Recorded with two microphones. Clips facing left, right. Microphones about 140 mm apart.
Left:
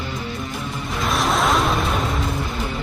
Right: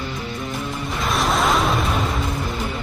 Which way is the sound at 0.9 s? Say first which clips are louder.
Left 1 dB; centre (ahead or behind).